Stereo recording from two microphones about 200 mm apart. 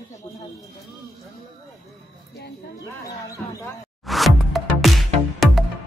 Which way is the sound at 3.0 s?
15° left (ahead or behind).